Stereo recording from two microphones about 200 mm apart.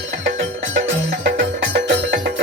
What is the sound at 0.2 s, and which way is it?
Music, 70° right (ahead or behind).